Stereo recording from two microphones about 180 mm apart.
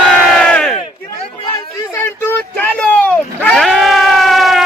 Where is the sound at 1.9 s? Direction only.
10° left (ahead or behind).